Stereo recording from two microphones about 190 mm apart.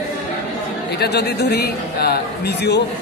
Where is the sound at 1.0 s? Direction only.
60° left (ahead or behind).